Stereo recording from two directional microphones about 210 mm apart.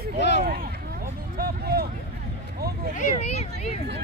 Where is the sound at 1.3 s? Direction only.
45° right (ahead or behind).